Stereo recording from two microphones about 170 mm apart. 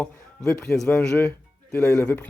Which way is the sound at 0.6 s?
Centre (ahead or behind).